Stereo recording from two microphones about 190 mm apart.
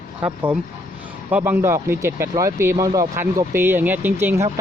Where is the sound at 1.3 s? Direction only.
10° right (ahead or behind).